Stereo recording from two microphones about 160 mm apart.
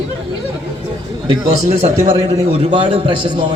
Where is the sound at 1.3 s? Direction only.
40° right (ahead or behind).